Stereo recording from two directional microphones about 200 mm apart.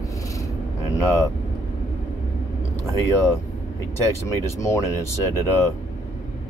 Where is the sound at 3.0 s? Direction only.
10° left (ahead or behind).